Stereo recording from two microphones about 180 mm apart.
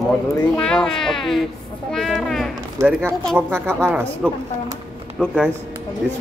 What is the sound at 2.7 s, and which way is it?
Speech, 15° right (ahead or behind).